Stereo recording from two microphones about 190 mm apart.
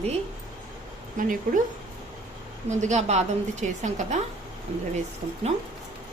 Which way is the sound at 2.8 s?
35° right (ahead or behind).